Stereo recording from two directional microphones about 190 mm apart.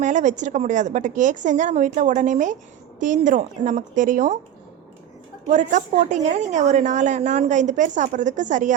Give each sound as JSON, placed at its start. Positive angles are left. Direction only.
{"t": 0.0, "sound": "a woman's voice", "side_deg": -40}
{"t": 5.5, "sound": "a woman's voice", "side_deg": -40}